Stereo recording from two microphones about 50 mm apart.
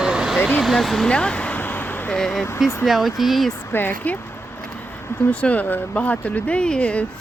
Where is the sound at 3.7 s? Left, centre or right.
Left.